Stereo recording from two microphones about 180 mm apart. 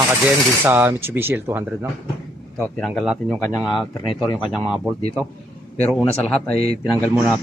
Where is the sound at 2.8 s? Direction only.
Centre (ahead or behind).